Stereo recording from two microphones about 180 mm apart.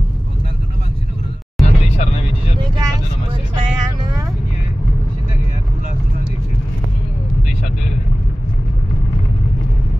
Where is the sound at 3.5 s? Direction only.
25° right (ahead or behind).